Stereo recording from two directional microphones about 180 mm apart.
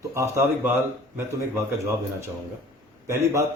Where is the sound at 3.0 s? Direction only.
15° right (ahead or behind).